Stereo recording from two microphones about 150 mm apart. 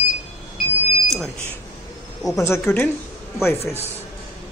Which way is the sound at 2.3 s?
20° left (ahead or behind).